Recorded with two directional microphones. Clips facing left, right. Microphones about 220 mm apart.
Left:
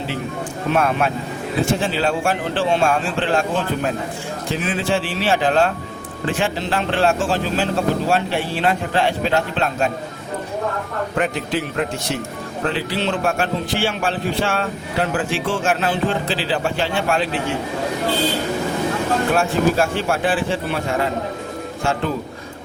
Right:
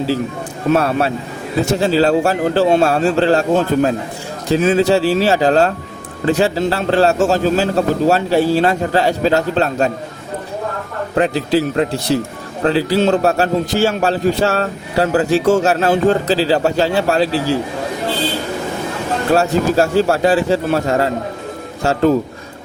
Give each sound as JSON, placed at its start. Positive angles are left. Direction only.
{"t": 0.7, "sound": "a man's voice", "side_deg": -35}
{"t": 11.2, "sound": "a man's voice", "side_deg": -35}
{"t": 19.3, "sound": "a man's voice", "side_deg": -40}